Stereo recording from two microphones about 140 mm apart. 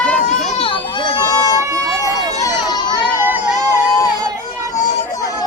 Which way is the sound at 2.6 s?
30° left (ahead or behind).